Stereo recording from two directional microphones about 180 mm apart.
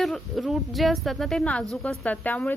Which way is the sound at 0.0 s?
Centre (ahead or behind).